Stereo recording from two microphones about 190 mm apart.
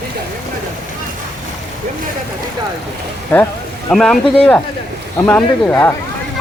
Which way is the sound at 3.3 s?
10° left (ahead or behind).